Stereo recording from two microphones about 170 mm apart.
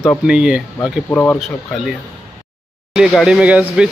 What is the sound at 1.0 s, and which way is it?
Speech, 10° left (ahead or behind).